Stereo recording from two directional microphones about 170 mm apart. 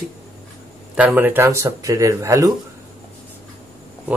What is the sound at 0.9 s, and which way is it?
Speech, 10° right (ahead or behind).